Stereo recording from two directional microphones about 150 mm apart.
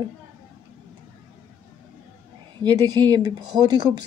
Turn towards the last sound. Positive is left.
turn(degrees=-30)  # may be behind; listen again after turning